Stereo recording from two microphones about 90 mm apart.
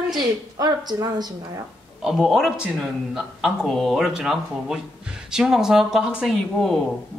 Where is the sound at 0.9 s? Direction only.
50° right (ahead or behind).